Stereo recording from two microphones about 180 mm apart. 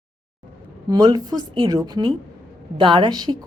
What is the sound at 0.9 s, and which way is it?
A woman's voice, 20° right (ahead or behind).